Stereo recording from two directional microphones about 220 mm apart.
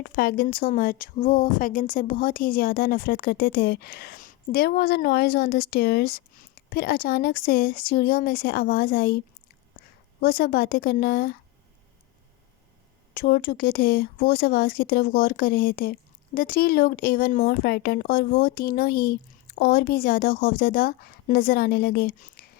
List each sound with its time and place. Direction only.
0.0 s speech: 45° left (ahead or behind)
13.1 s speech: 45° left (ahead or behind)